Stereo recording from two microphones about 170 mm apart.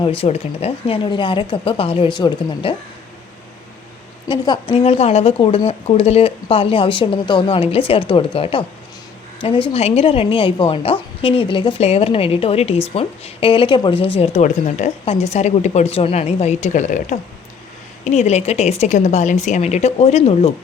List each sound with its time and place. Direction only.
0.2 s a woman's voice: 35° left (ahead or behind)
4.3 s a woman's voice: 25° left (ahead or behind)